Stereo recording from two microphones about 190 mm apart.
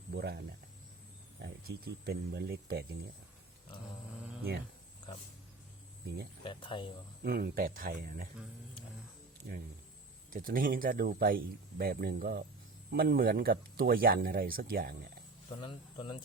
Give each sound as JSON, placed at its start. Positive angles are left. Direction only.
{"t": 0.1, "sound": "speech", "side_deg": -60}
{"t": 6.4, "sound": "speech", "side_deg": 25}
{"t": 7.2, "sound": "speech", "side_deg": -50}
{"t": 9.5, "sound": "speech", "side_deg": -50}
{"t": 15.4, "sound": "speech", "side_deg": 25}